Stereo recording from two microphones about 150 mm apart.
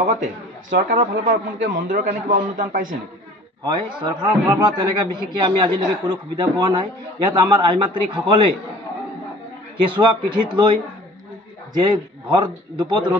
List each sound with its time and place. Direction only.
0.0 s a man's voice: 55° right (ahead or behind)
4.0 s a man's voice: 30° right (ahead or behind)
9.8 s a man's voice: 35° right (ahead or behind)